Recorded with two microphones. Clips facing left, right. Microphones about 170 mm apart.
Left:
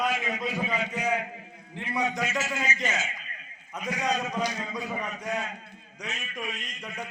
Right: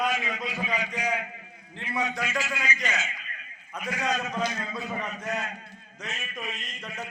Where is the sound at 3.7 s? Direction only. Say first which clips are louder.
Left 1 dB; 20° left (ahead or behind).